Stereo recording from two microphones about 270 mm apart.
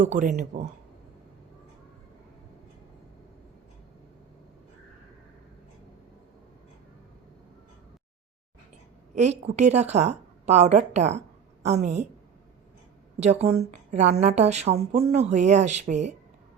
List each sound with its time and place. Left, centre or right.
0.0 s a woman's voice: right
9.1 s a woman's voice: right
13.1 s a woman's voice: right